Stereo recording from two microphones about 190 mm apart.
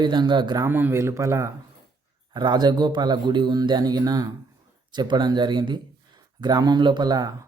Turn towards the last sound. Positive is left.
turn(degrees=-20)  # may be behind; listen again after turning